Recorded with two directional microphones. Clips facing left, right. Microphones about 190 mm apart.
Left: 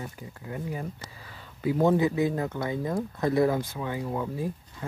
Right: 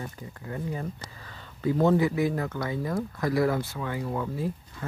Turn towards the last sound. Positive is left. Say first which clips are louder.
# right 1 dB
turn(degrees=15)  # may be behind; listen again after turning